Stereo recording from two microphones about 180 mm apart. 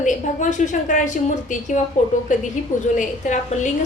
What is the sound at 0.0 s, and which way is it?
A woman's voice, 45° left (ahead or behind).